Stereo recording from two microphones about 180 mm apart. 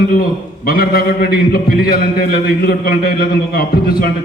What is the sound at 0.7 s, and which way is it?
A man's voice, 55° left (ahead or behind).